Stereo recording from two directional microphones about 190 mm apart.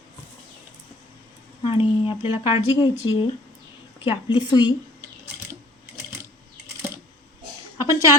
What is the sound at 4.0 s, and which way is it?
Speech, 25° left (ahead or behind).